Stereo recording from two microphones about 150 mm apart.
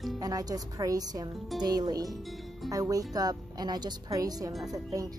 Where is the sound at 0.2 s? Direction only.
25° right (ahead or behind).